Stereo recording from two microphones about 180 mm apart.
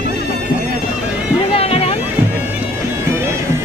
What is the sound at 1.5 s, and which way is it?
Boat, 35° left (ahead or behind).